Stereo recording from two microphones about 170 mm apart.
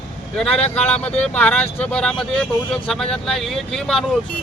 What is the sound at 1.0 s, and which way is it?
Speech, 10° left (ahead or behind).